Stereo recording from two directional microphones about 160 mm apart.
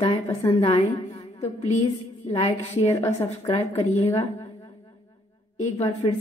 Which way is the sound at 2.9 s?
20° left (ahead or behind).